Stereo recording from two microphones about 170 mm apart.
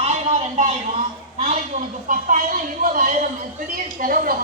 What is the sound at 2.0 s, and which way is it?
A woman's voice, 50° right (ahead or behind).